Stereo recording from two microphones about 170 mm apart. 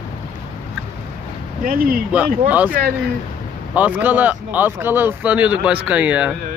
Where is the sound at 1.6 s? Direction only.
60° right (ahead or behind).